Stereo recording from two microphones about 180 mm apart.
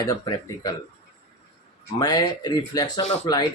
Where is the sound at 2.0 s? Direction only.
20° left (ahead or behind).